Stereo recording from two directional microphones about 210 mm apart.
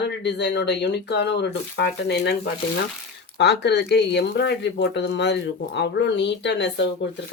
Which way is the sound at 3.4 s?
55° left (ahead or behind).